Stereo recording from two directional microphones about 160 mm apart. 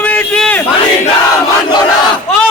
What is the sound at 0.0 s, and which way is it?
Battle cry, 10° left (ahead or behind).